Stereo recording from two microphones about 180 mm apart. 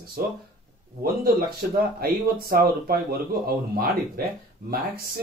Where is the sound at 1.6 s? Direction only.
55° right (ahead or behind).